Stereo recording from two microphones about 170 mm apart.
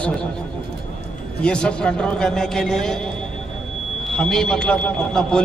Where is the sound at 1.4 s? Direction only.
5° left (ahead or behind).